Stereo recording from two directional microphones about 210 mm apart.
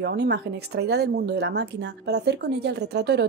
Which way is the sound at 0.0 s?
50° right (ahead or behind).